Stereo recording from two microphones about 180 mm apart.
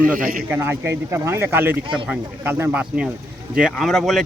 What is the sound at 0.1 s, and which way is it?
Speech, 50° right (ahead or behind).